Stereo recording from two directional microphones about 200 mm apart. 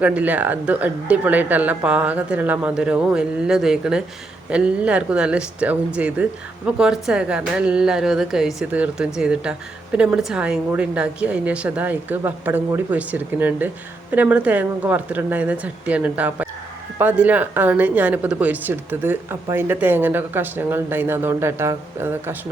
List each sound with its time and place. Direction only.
0.0 s speech: 5° right (ahead or behind)